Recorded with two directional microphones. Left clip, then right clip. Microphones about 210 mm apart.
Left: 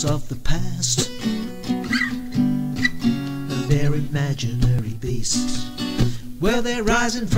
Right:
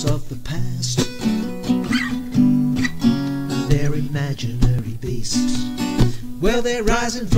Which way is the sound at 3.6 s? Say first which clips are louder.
Right 1 dB; centre (ahead or behind).